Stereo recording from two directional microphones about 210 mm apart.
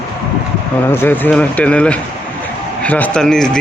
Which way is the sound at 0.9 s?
10° left (ahead or behind).